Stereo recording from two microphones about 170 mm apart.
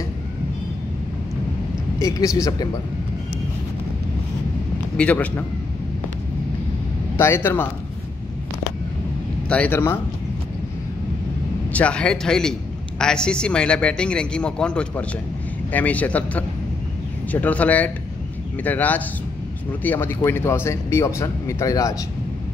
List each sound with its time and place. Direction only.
2.0 s speech: 20° left (ahead or behind)
4.9 s a man's voice: 10° left (ahead or behind)
7.2 s a man's voice: 15° left (ahead or behind)
9.5 s a man's voice: 10° left (ahead or behind)
11.7 s a man's voice: 5° left (ahead or behind)